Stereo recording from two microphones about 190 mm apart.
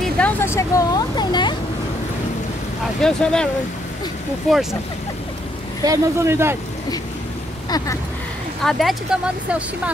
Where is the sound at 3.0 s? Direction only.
5° left (ahead or behind).